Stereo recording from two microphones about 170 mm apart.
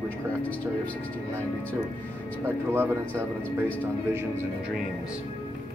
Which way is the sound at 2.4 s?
15° right (ahead or behind).